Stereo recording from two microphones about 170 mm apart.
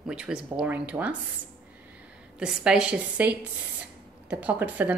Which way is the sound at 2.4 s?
5° right (ahead or behind).